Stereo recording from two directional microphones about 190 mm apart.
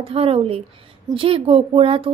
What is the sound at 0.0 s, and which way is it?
Speech, 30° right (ahead or behind).